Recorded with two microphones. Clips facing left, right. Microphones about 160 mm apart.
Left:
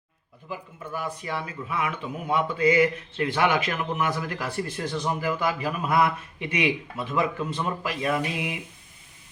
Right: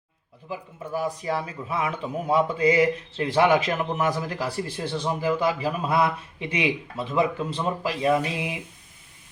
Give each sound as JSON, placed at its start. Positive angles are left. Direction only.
{"t": 0.9, "sound": "a man's voice", "side_deg": -35}